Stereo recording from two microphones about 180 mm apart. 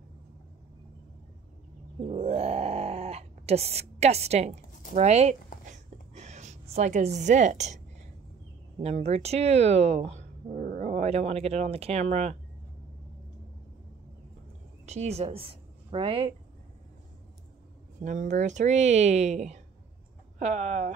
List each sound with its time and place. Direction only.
2.0 s groan: 35° right (ahead or behind)
4.9 s speech: 35° right (ahead or behind)
5.7 s a sound: 40° right (ahead or behind)
8.7 s a woman's voice: 35° right (ahead or behind)
14.9 s a woman's voice: 35° right (ahead or behind)
18.0 s speech: 45° right (ahead or behind)